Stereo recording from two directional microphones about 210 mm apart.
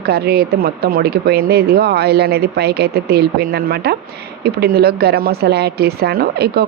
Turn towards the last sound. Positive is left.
turn(degrees=-50)  # may be behind; listen again after turning